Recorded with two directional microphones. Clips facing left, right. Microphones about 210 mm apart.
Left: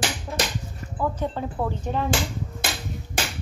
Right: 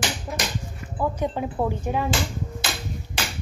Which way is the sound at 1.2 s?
15° right (ahead or behind).